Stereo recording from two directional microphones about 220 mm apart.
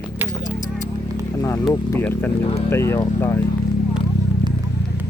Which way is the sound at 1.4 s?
15° left (ahead or behind).